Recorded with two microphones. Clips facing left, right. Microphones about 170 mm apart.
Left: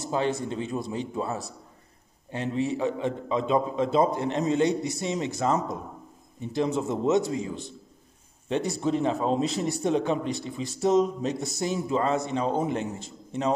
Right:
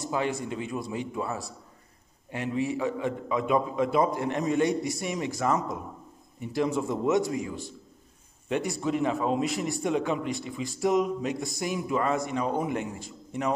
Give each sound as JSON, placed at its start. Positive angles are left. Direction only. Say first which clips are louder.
{"t": 0.1, "sound": "a man's voice", "louder": "left 3 dB", "side_deg": 30}